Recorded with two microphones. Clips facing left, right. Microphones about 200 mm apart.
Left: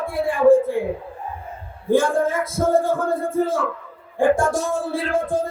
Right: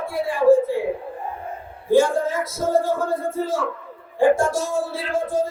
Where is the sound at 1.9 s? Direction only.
55° left (ahead or behind).